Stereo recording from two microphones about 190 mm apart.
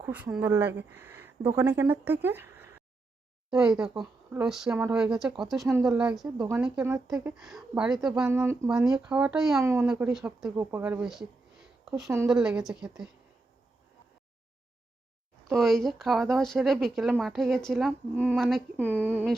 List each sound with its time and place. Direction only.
0.0 s speech: 10° right (ahead or behind)
6.2 s speech: 20° right (ahead or behind)
6.6 s speech: 10° right (ahead or behind)
7.3 s speech: centre (ahead or behind)
9.6 s speech: 15° right (ahead or behind)
10.5 s speech: 10° right (ahead or behind)
11.9 s speech: 15° right (ahead or behind)
12.3 s speech: 5° right (ahead or behind)
15.5 s speech: centre (ahead or behind)
19.0 s speech: 10° right (ahead or behind)